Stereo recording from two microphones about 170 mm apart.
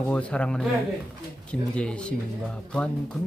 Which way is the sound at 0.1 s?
5° left (ahead or behind).